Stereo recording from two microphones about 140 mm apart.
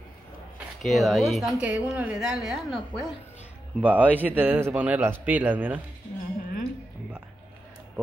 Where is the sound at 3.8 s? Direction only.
10° right (ahead or behind).